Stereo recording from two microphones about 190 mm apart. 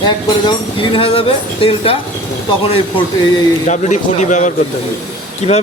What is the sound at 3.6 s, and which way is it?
A man's voice, 40° left (ahead or behind).